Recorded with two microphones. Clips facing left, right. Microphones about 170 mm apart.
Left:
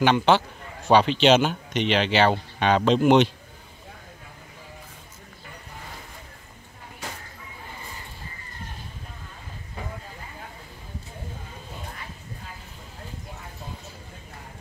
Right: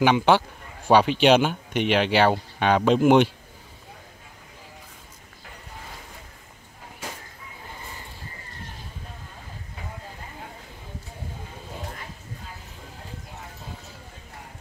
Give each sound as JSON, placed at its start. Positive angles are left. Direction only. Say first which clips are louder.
{"t": 0.0, "sound": "speech", "louder": "right 1 dB", "side_deg": -10}